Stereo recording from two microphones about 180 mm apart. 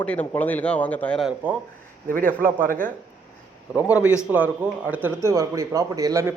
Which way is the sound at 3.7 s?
5° right (ahead or behind).